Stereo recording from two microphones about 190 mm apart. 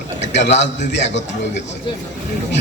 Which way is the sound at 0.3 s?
65° left (ahead or behind).